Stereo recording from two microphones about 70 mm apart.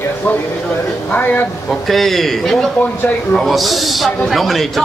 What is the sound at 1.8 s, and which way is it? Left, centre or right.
A man's voice, centre.